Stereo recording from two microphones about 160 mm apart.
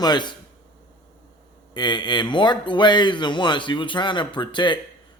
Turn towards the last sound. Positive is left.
turn(degrees=30)  # may be behind; listen again after turning